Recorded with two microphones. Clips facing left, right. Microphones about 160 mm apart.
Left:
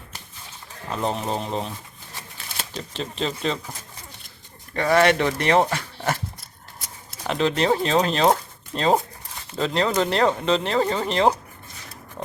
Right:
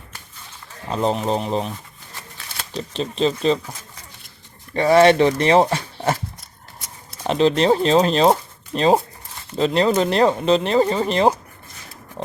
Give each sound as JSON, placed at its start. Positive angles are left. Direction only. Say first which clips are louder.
{"t": 0.9, "sound": "speech", "louder": "right 5 dB", "side_deg": -25}
{"t": 2.9, "sound": "speech", "louder": "right 7 dB", "side_deg": -20}
{"t": 4.7, "sound": "speech", "louder": "right 5 dB", "side_deg": -25}
{"t": 7.3, "sound": "speech", "louder": "right 5 dB", "side_deg": -25}